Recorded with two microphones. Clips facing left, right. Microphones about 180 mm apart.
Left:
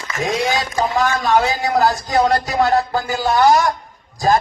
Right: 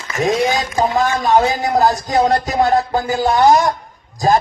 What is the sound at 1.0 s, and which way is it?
Speech, 20° right (ahead or behind).